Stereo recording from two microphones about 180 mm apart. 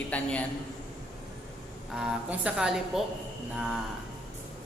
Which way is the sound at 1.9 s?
5° right (ahead or behind).